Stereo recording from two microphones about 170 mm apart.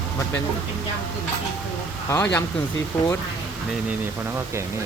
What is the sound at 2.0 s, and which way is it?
Speech, 10° left (ahead or behind).